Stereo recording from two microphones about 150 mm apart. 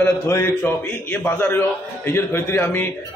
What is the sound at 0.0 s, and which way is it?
A man's voice, 20° left (ahead or behind).